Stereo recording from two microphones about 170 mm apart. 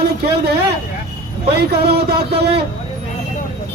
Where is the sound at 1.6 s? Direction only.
70° right (ahead or behind).